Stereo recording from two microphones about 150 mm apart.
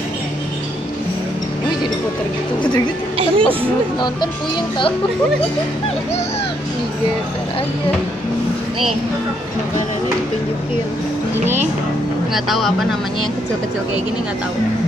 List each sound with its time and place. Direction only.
3.2 s speech: 35° right (ahead or behind)
12.4 s speech: centre (ahead or behind)